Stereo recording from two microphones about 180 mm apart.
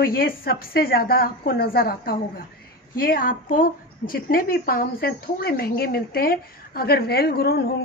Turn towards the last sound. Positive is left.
turn(degrees=60)  # may be behind; listen again after turning